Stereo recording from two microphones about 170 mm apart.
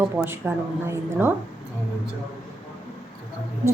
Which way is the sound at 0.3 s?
15° right (ahead or behind).